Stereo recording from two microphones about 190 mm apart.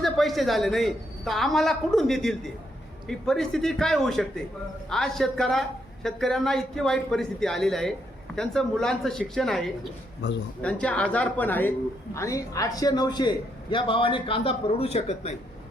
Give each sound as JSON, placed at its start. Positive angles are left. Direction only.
{"t": 0.0, "sound": "a woman's voice", "side_deg": 0}
{"t": 10.2, "sound": "a man's voice", "side_deg": 65}
{"t": 10.6, "sound": "a woman's voice", "side_deg": 5}